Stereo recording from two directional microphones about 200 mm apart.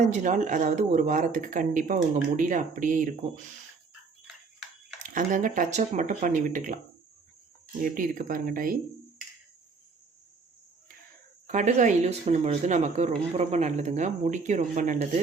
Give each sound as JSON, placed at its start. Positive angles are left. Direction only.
{"t": 0.0, "sound": "speech", "side_deg": -35}
{"t": 5.0, "sound": "speech", "side_deg": -40}
{"t": 7.8, "sound": "speech", "side_deg": -45}
{"t": 11.4, "sound": "speech", "side_deg": -35}